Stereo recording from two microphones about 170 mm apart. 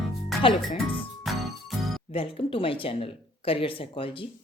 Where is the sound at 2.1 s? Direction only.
30° left (ahead or behind).